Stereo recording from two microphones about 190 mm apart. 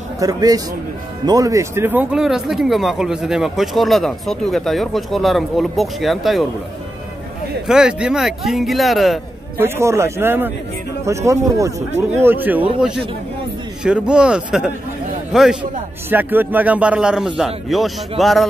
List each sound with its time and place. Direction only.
0.2 s speech: 20° right (ahead or behind); by 6.4 s centre (ahead or behind)
7.6 s speech: 5° right (ahead or behind)
9.6 s a man's voice: 15° right (ahead or behind)
13.8 s a man's voice: 5° right (ahead or behind)